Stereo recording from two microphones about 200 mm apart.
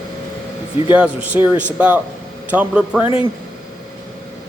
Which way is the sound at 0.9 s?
5° right (ahead or behind).